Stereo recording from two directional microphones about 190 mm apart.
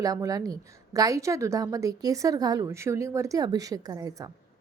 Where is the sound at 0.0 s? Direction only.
20° right (ahead or behind).